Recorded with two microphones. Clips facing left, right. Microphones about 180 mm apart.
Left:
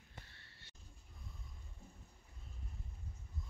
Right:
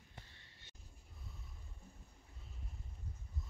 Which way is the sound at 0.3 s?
15° right (ahead or behind).